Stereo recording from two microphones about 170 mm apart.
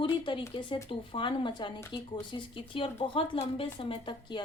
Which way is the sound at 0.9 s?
30° left (ahead or behind).